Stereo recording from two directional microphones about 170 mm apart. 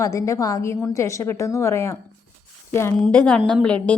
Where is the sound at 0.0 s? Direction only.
20° left (ahead or behind).